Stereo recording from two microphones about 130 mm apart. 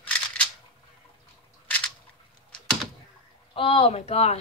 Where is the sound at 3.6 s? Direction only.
45° left (ahead or behind).